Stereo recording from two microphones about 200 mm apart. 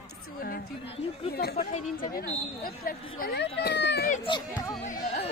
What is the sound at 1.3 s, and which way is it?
Speech, 50° left (ahead or behind).